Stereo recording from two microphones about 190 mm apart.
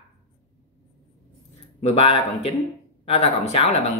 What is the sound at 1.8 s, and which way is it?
A man's voice, 30° left (ahead or behind).